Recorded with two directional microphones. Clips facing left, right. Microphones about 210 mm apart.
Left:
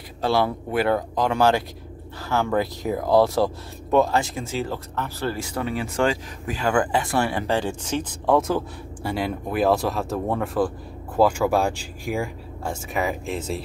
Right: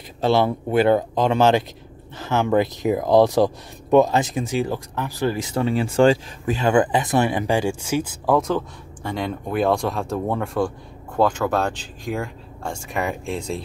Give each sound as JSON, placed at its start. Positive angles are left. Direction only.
{"t": 0.2, "sound": "speech", "side_deg": -25}
{"t": 8.4, "sound": "speech", "side_deg": 5}